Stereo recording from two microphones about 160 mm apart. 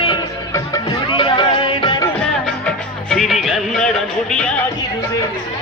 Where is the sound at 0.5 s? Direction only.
25° left (ahead or behind).